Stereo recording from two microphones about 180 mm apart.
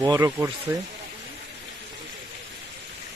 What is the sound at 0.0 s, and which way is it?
Speech, 20° right (ahead or behind).